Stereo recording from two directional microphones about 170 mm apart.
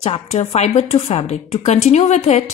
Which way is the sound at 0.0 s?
40° left (ahead or behind).